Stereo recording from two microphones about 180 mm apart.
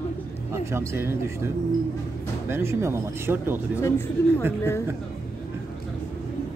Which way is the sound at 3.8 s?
15° left (ahead or behind).